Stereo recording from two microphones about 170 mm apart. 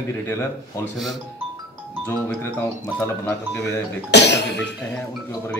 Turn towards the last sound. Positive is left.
turn(degrees=90)